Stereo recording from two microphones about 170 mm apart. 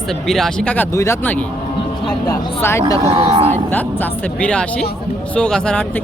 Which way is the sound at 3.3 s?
35° right (ahead or behind).